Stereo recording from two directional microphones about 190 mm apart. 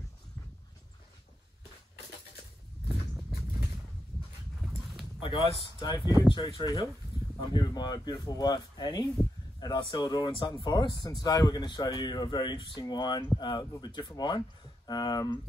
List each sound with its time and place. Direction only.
2.9 s horse: centre (ahead or behind)
5.2 s a sound: 30° left (ahead or behind)
5.6 s a man's voice: 20° left (ahead or behind)